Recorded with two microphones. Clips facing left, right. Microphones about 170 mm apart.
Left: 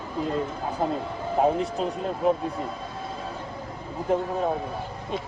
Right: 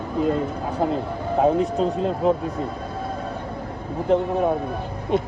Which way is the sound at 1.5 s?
35° right (ahead or behind).